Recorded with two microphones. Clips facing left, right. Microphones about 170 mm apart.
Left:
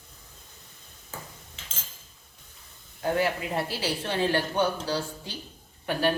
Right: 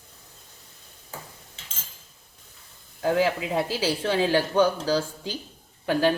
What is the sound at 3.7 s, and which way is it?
Speech, 90° right.